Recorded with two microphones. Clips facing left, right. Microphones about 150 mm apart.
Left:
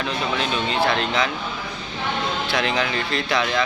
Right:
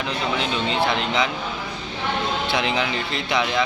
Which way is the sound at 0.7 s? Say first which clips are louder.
Left 1 dB; 20° right (ahead or behind).